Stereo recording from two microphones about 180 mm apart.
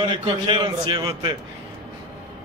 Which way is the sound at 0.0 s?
25° right (ahead or behind).